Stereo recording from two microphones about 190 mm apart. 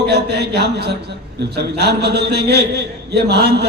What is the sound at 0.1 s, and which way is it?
A man's voice, 60° right (ahead or behind).